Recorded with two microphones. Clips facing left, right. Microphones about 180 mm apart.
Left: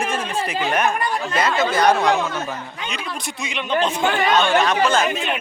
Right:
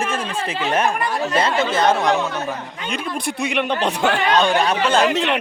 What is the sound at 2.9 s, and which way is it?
Speech, 55° right (ahead or behind).